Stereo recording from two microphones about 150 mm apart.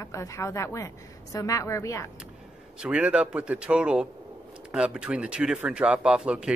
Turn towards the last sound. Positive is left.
turn(degrees=-5)  # may be behind; listen again after turning